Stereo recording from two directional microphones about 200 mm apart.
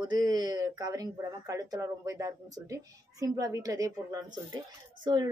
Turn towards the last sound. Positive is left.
turn(degrees=-20)  # may be behind; listen again after turning